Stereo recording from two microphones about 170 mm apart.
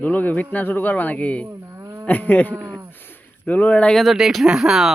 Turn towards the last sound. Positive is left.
turn(degrees=-5)  # may be behind; listen again after turning